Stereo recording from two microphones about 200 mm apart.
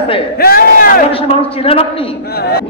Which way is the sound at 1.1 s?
30° left (ahead or behind).